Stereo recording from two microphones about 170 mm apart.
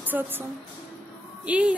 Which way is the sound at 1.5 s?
5° right (ahead or behind).